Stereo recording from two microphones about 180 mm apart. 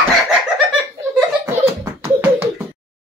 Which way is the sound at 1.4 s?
15° right (ahead or behind).